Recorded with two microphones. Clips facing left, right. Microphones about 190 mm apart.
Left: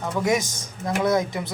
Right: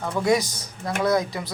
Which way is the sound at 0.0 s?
15° left (ahead or behind).